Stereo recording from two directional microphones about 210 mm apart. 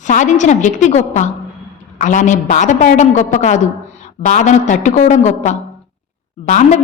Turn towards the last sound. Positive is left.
turn(degrees=35)  # may be behind; listen again after turning